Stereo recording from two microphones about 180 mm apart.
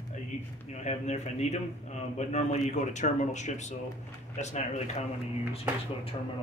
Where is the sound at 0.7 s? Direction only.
40° left (ahead or behind).